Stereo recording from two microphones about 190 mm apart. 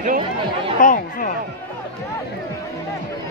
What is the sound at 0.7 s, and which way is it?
Speech, 45° left (ahead or behind).